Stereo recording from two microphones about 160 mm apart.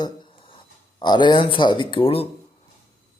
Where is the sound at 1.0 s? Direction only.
30° left (ahead or behind).